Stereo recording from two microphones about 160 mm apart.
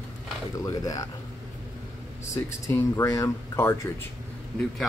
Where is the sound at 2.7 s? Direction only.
15° left (ahead or behind).